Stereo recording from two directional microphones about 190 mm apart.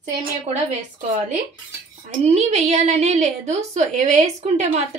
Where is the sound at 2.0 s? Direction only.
35° right (ahead or behind).